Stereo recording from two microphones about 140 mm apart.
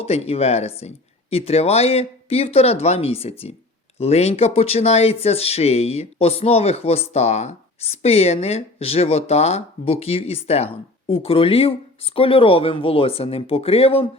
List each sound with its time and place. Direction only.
0.0 s speech: 45° left (ahead or behind)